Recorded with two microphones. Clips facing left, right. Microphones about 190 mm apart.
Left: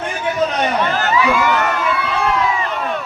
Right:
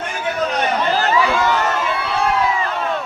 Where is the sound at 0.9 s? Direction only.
35° right (ahead or behind).